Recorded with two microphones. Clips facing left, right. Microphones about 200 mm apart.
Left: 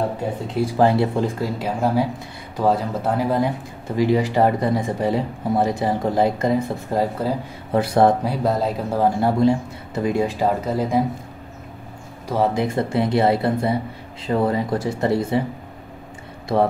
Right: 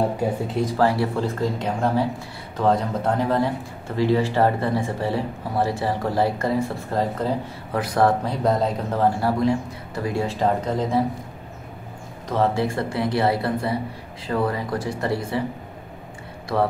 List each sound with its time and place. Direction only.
0.5 s speech: 5° left (ahead or behind)
0.7 s speech: 20° left (ahead or behind)
7.7 s speech: 25° left (ahead or behind)
8.2 s speech: 5° left (ahead or behind)
9.2 s speech: 25° left (ahead or behind)
10.4 s speech: 10° left (ahead or behind)
12.3 s speech: 15° left (ahead or behind)